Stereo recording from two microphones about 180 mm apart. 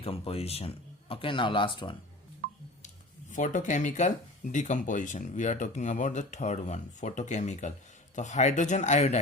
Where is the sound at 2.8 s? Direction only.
45° left (ahead or behind).